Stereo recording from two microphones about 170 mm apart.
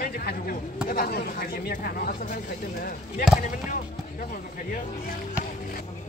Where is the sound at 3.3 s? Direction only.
50° left (ahead or behind).